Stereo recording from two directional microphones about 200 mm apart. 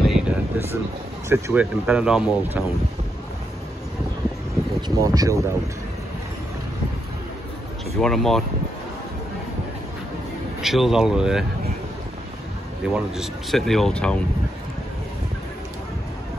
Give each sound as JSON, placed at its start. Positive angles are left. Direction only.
{"t": 0.0, "sound": "a sound", "side_deg": -5}
{"t": 1.3, "sound": "speech", "side_deg": -5}
{"t": 4.8, "sound": "speech", "side_deg": -15}
{"t": 8.0, "sound": "speech", "side_deg": 0}
{"t": 10.6, "sound": "speech", "side_deg": 0}
{"t": 12.9, "sound": "speech", "side_deg": 0}